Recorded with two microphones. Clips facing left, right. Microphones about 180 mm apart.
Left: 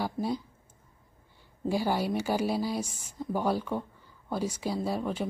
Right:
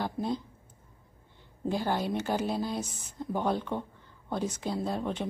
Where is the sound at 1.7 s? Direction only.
10° left (ahead or behind).